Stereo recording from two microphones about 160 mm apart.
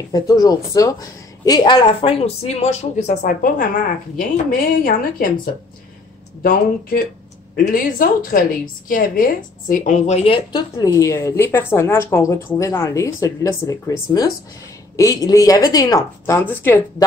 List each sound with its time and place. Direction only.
0.1 s a woman's voice: 20° left (ahead or behind)
10.8 s a woman's voice: 20° left (ahead or behind)